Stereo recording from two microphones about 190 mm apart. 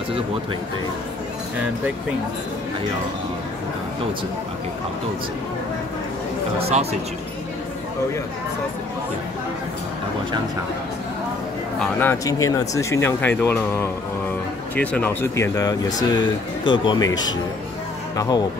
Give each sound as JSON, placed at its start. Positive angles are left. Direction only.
{"t": 6.6, "sound": "speech", "side_deg": -35}
{"t": 11.8, "sound": "speech", "side_deg": 10}